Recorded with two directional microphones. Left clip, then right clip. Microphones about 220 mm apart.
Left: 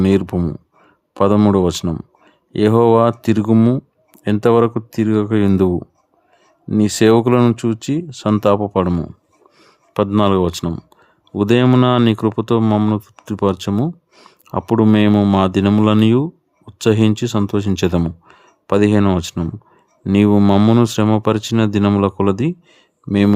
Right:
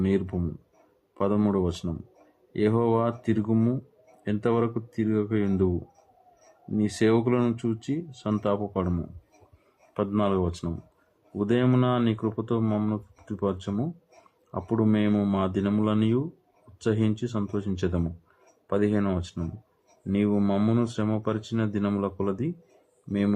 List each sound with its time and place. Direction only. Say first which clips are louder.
0.0 s speech: left 11 dB; 45° left (ahead or behind)